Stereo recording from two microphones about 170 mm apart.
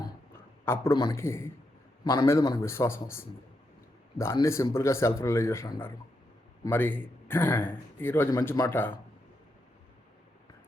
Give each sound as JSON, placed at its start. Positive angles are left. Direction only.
{"t": 0.6, "sound": "a man's voice", "side_deg": 15}